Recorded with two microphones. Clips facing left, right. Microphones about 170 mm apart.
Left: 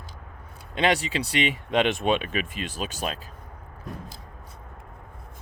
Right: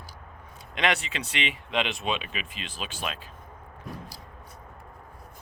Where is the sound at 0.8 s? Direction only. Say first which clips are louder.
Left 4 dB; 30° left (ahead or behind).